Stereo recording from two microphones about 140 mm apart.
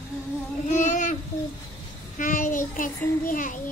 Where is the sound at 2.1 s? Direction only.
70° left (ahead or behind).